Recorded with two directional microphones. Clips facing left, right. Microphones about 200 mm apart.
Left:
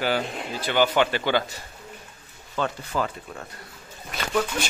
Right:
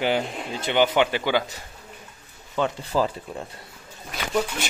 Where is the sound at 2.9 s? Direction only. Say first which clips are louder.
Right 4 dB; 30° right (ahead or behind).